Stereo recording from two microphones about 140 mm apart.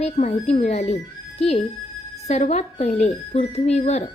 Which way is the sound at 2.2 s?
55° left (ahead or behind).